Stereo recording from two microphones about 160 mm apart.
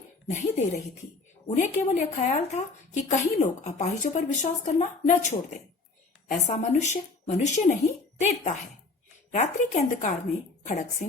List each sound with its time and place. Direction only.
0.3 s a woman's voice: 45° left (ahead or behind)